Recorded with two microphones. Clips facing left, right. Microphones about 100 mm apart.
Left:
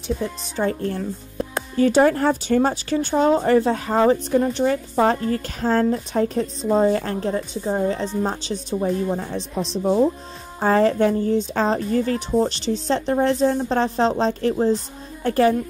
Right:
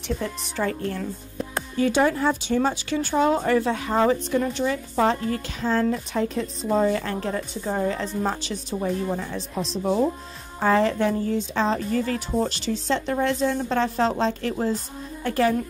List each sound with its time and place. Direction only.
0.6 s speech: 35° left (ahead or behind)
10.6 s speech: 40° left (ahead or behind)